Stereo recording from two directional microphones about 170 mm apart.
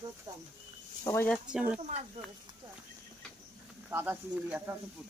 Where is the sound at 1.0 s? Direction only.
15° left (ahead or behind).